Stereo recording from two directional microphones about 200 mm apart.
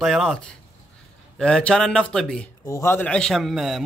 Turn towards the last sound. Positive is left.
turn(degrees=0)  # may be behind; listen again after turning